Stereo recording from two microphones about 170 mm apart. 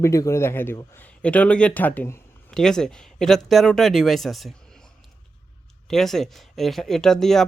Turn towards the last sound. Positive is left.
turn(degrees=5)  # may be behind; listen again after turning